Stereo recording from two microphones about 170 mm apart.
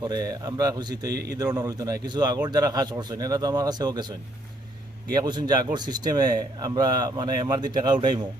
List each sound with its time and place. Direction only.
0.0 s speech: 25° right (ahead or behind)
1.1 s a man's voice: 70° right (ahead or behind)
1.4 s speech: 20° right (ahead or behind)
5.1 s speech: 25° right (ahead or behind)